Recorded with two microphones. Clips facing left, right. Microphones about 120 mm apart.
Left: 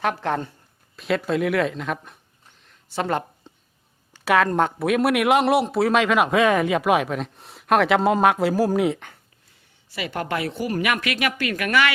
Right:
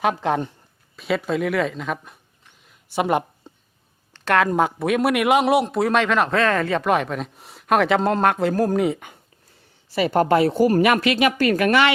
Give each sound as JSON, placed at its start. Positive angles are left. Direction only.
{"t": 0.0, "sound": "speech", "side_deg": -15}
{"t": 0.9, "sound": "speech", "side_deg": 0}
{"t": 2.6, "sound": "a sound", "side_deg": -15}
{"t": 4.1, "sound": "a sound", "side_deg": 5}
{"t": 4.4, "sound": "speech", "side_deg": -5}
{"t": 9.9, "sound": "speech", "side_deg": -40}
{"t": 11.3, "sound": "speech", "side_deg": -35}